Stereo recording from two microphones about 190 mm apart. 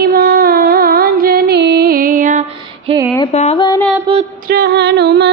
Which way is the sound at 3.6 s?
20° left (ahead or behind).